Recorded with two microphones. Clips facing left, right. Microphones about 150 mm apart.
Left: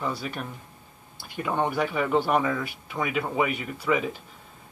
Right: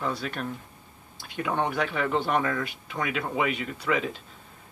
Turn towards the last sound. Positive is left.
turn(degrees=10)  # may be behind; listen again after turning